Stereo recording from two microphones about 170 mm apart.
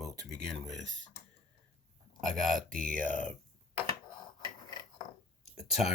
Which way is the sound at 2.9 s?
10° left (ahead or behind).